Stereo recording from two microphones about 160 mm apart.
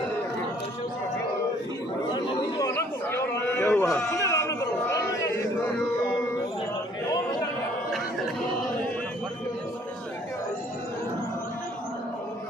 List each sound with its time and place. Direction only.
2.7 s chatter: 15° left (ahead or behind)